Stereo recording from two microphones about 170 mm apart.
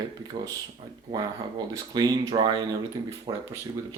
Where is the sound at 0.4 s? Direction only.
25° right (ahead or behind).